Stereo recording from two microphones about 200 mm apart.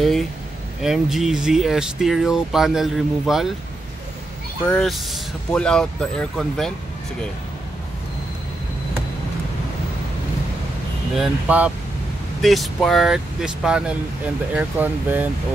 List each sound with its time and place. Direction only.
0.0 s speech: centre (ahead or behind)
4.6 s speech: centre (ahead or behind)
11.1 s speech: 5° right (ahead or behind)